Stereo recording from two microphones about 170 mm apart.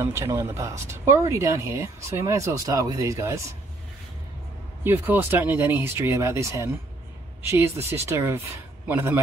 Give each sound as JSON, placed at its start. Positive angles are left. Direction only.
{"t": 0.0, "sound": "speech", "side_deg": -15}
{"t": 4.8, "sound": "speech", "side_deg": -10}